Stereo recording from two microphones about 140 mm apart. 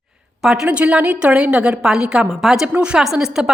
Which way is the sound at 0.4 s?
5° right (ahead or behind).